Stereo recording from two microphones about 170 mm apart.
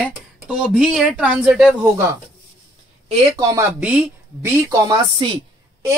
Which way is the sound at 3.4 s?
20° right (ahead or behind).